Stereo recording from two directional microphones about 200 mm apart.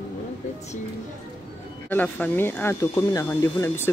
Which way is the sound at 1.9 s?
10° left (ahead or behind).